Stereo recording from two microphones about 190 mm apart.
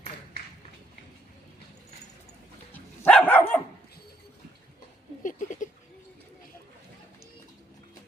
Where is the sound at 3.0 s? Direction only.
5° left (ahead or behind).